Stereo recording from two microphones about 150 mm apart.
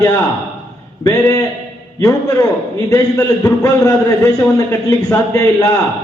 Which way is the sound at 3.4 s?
20° left (ahead or behind).